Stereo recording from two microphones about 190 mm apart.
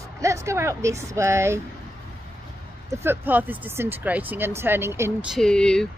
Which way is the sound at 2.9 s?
10° right (ahead or behind).